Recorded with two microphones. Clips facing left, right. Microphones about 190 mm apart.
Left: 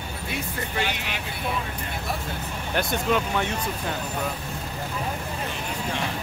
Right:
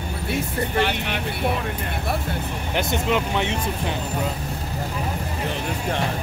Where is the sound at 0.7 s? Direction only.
55° right (ahead or behind).